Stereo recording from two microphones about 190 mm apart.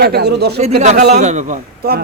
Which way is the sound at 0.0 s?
60° right (ahead or behind).